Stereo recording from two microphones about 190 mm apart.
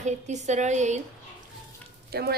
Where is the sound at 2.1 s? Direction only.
55° right (ahead or behind).